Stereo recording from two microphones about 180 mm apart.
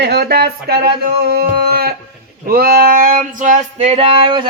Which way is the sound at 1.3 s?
60° right (ahead or behind).